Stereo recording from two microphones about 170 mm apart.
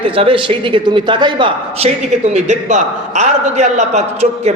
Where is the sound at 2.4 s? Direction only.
45° right (ahead or behind).